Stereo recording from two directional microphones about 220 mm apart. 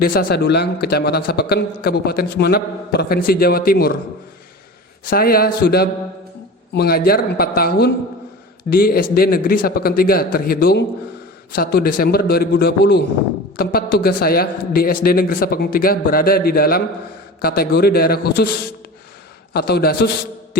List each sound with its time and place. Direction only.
0.0 s a man's voice: 45° left (ahead or behind)
5.0 s a man's voice: 40° left (ahead or behind)
19.5 s a man's voice: 45° left (ahead or behind)